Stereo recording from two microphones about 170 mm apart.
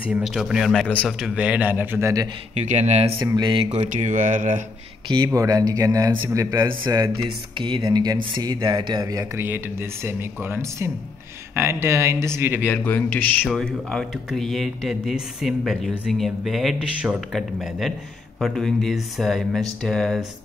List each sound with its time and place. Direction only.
0.0 s speech: 5° right (ahead or behind)
2.5 s speech: 40° right (ahead or behind)
3.2 s speech: 15° right (ahead or behind)
3.4 s speech: 25° right (ahead or behind)
3.9 s speech: 50° right (ahead or behind)
5.0 s speech: 25° right (ahead or behind)
12.6 s speech: 10° left (ahead or behind)